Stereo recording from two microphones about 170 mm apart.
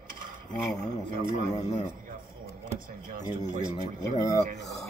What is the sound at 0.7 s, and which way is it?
Radio, 55° right (ahead or behind).